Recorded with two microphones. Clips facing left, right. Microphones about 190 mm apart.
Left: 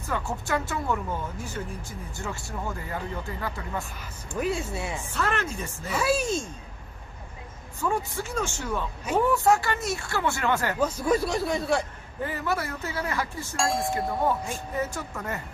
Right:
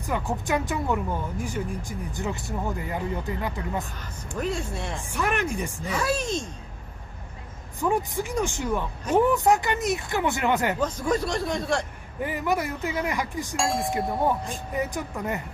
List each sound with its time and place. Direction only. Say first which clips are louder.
0.0 s speech: right 3 dB; 15° right (ahead or behind)
4.4 s speech: left 1 dB; 5° left (ahead or behind)
5.0 s speech: right 4 dB; 15° right (ahead or behind)
5.9 s speech: left 2 dB; 10° left (ahead or behind)
7.8 s speech: right 3 dB; 15° right (ahead or behind)
10.8 s speech: left 1 dB; 10° left (ahead or behind)
12.2 s speech: right 3 dB; 15° right (ahead or behind)
13.6 s speech: even; centre (ahead or behind)
14.5 s speech: right 1 dB; 15° right (ahead or behind)